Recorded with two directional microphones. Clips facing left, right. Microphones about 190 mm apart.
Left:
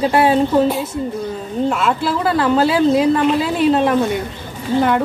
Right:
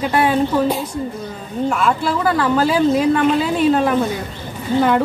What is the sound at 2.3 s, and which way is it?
Speech, 30° left (ahead or behind).